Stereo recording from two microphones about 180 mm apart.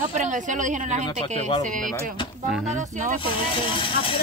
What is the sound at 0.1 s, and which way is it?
Speech, 40° right (ahead or behind).